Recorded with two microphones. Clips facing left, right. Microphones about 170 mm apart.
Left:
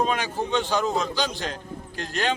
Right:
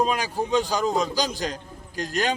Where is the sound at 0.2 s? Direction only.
35° right (ahead or behind).